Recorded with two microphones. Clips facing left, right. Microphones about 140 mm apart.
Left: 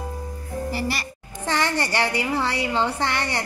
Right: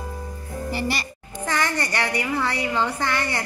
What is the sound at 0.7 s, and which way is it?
Music, centre (ahead or behind).